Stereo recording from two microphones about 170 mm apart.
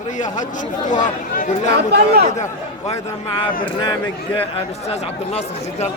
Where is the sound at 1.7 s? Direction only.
70° right (ahead or behind).